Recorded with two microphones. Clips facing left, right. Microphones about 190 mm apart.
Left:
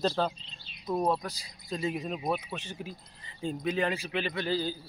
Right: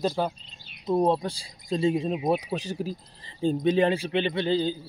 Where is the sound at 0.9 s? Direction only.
30° right (ahead or behind).